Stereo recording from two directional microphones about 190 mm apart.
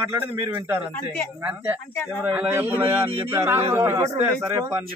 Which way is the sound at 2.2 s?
10° right (ahead or behind).